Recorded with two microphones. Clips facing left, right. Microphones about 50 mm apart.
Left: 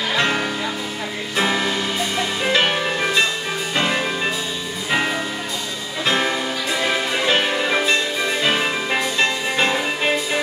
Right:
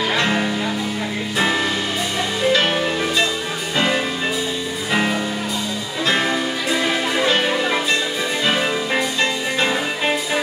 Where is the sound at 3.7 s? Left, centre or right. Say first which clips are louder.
Right 2 dB; centre.